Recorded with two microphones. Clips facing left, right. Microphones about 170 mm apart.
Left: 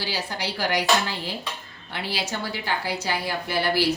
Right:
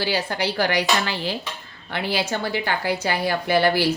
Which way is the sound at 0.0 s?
60° right (ahead or behind).